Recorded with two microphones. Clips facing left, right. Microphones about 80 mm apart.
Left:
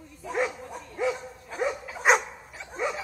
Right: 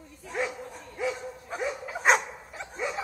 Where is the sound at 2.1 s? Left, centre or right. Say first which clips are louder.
Left 1 dB; centre.